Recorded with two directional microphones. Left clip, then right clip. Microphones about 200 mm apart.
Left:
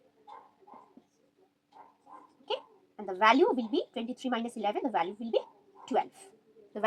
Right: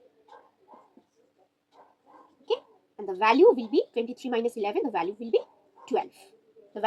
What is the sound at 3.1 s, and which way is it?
A woman's voice, 40° left (ahead or behind).